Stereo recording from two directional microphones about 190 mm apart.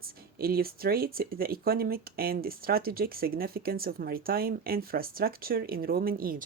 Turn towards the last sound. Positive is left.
turn(degrees=-50)  # may be behind; listen again after turning